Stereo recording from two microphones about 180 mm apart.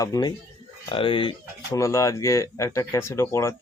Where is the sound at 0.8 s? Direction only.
30° left (ahead or behind).